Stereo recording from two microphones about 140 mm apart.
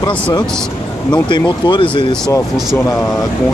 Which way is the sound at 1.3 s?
35° left (ahead or behind).